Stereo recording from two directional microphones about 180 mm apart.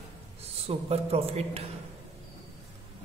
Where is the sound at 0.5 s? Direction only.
35° right (ahead or behind).